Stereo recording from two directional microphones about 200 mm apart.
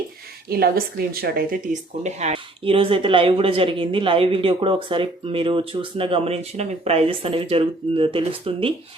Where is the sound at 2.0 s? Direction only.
35° right (ahead or behind).